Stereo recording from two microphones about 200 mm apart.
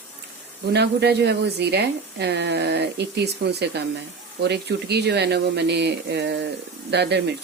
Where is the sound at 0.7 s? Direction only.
55° right (ahead or behind).